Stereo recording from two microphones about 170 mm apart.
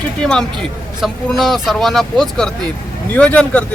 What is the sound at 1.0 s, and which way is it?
Speech, centre (ahead or behind).